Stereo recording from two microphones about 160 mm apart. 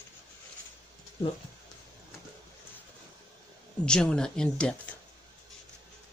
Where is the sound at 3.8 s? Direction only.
5° left (ahead or behind).